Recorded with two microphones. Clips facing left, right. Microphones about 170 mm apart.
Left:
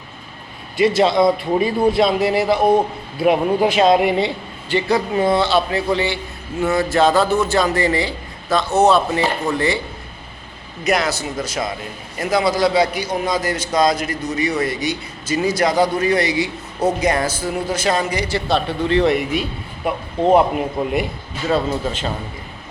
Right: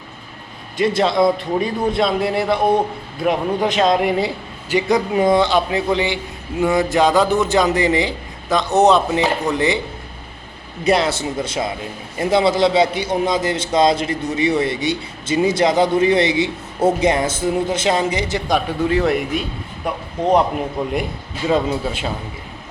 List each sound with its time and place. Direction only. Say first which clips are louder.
0.8 s a man's voice: left 1 dB; centre (ahead or behind)
4.7 s a man's voice: right 1 dB; 15° right (ahead or behind)
10.8 s a man's voice: right 2 dB; 30° right (ahead or behind); by 21.1 s 5° left (ahead or behind)
21.4 s speech: right 1 dB; 10° right (ahead or behind)